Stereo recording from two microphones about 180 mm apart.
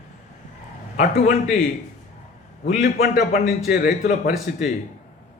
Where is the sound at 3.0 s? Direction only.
60° left (ahead or behind).